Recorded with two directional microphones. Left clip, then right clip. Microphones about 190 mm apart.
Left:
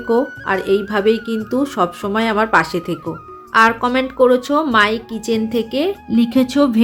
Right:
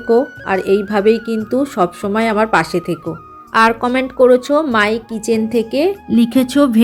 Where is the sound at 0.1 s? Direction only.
10° right (ahead or behind).